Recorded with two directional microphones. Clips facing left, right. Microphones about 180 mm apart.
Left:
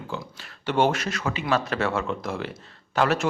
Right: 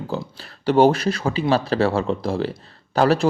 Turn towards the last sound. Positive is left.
turn(degrees=-35)  # may be behind; listen again after turning